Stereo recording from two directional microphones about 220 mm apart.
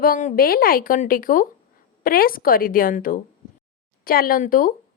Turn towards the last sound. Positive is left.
turn(degrees=40)  # may be behind; listen again after turning